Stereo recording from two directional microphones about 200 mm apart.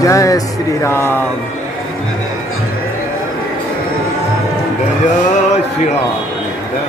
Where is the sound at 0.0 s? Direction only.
15° left (ahead or behind).